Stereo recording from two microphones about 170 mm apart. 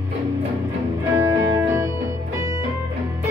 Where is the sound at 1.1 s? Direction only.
15° right (ahead or behind).